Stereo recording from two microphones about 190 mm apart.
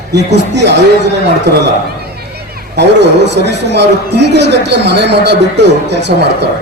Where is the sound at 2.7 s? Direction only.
65° right (ahead or behind).